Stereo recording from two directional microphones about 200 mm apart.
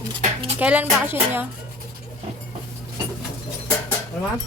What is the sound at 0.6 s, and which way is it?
Speech, 5° right (ahead or behind).